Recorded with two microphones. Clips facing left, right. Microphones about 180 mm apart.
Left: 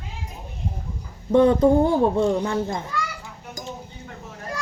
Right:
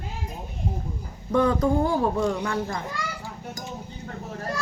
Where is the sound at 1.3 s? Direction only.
25° left (ahead or behind).